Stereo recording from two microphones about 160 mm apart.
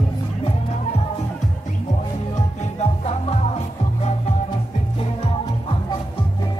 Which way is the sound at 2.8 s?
40° left (ahead or behind).